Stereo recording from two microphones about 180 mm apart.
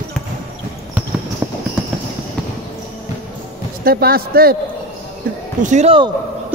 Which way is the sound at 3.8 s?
55° right (ahead or behind).